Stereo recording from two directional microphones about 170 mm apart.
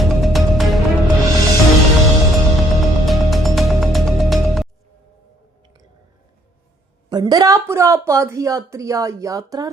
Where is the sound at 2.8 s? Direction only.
Centre (ahead or behind).